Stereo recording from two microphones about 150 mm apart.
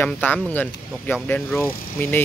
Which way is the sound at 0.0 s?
10° left (ahead or behind).